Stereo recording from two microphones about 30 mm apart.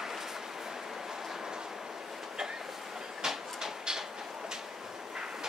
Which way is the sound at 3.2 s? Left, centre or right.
Centre.